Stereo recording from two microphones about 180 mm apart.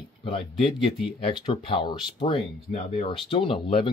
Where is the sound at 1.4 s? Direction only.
30° left (ahead or behind).